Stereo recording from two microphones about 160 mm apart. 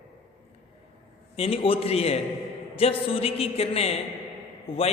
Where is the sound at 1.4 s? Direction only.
35° left (ahead or behind).